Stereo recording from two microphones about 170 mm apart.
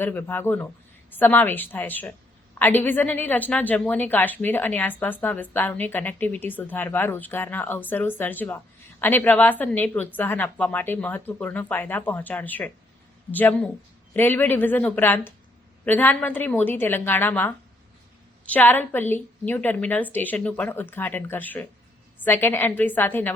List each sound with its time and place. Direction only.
0.0 s a woman's voice: 10° left (ahead or behind)